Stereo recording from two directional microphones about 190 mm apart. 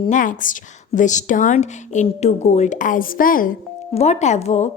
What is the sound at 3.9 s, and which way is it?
Speech, 35° left (ahead or behind).